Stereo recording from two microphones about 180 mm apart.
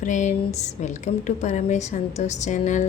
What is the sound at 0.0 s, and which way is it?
Speech, 45° left (ahead or behind).